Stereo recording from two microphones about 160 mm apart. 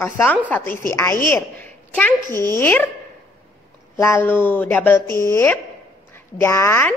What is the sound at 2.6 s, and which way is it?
Speech, 10° left (ahead or behind).